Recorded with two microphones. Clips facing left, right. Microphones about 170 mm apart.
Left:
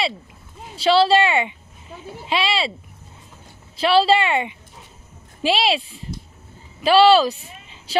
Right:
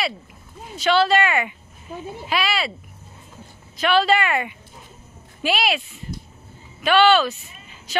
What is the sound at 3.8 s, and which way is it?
A woman's voice, 30° left (ahead or behind).